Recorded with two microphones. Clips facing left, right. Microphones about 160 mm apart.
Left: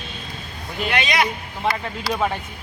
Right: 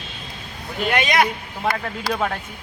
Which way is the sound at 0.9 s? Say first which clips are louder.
Right 2 dB; 50° right (ahead or behind).